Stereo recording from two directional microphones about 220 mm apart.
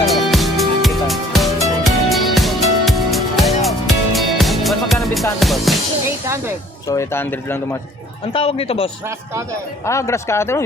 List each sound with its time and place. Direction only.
0.0 s music: centre (ahead or behind)
6.1 s music: 10° right (ahead or behind)
6.8 s speech: 15° left (ahead or behind)
8.3 s speech: 25° left (ahead or behind)
9.8 s speech: 15° left (ahead or behind)